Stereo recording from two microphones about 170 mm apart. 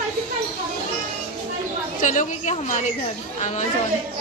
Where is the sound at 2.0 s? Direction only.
50° left (ahead or behind).